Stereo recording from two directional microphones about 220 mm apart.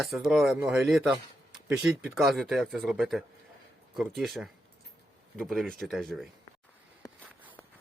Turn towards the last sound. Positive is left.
turn(degrees=0)  # may be behind; listen again after turning